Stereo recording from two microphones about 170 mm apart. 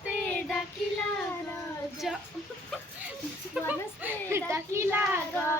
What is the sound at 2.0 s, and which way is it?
Child singing, centre (ahead or behind).